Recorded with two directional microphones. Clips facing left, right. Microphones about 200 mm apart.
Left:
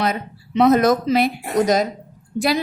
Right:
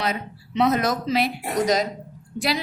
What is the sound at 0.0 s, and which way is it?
A woman's voice, 50° left (ahead or behind).